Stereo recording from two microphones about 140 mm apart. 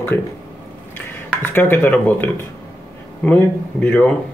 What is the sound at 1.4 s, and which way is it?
Speech, 15° left (ahead or behind).